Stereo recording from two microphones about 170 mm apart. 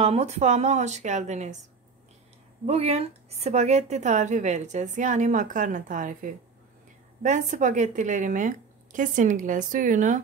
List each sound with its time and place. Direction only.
0.0 s a woman's voice: 40° right (ahead or behind)
2.6 s a woman's voice: 40° right (ahead or behind)